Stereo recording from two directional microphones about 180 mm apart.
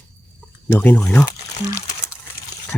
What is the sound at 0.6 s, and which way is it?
Speech, 10° left (ahead or behind).